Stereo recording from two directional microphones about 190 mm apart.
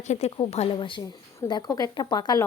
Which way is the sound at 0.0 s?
35° left (ahead or behind).